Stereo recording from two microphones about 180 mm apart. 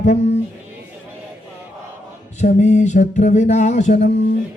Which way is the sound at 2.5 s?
40° left (ahead or behind).